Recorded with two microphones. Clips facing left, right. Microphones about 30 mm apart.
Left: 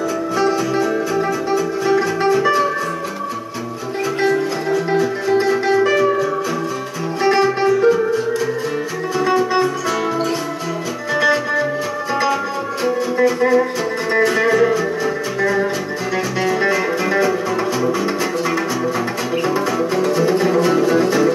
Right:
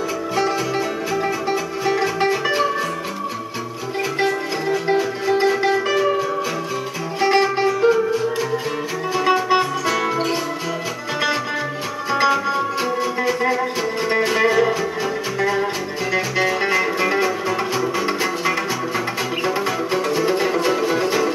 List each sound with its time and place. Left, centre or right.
1.9 s music: centre
4.6 s music: centre
7.2 s music: centre
9.1 s music: centre
14.1 s music: centre
19.9 s music: centre